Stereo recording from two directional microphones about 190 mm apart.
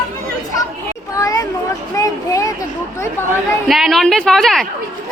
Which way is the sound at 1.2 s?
20° left (ahead or behind).